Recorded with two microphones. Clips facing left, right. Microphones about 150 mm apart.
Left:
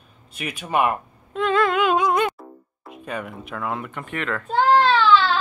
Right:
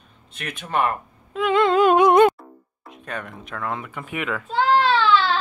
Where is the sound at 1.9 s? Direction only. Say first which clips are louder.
Right 6 dB; 65° right (ahead or behind).